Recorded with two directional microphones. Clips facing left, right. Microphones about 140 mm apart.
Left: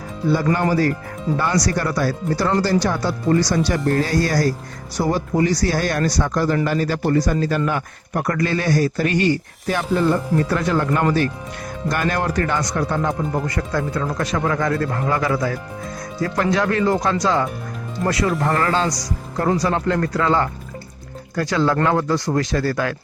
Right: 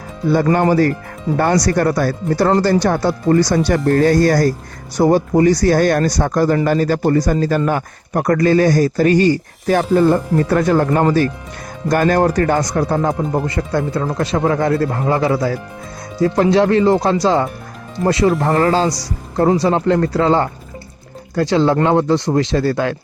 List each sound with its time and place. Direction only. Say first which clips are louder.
1.6 s speech: right 5 dB; 50° right (ahead or behind); by 23.0 s 25° right (ahead or behind)